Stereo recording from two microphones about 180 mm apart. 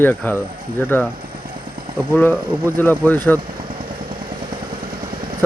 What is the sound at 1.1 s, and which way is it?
Vehicle, 50° right (ahead or behind).